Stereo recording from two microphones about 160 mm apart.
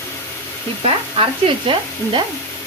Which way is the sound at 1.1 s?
35° right (ahead or behind).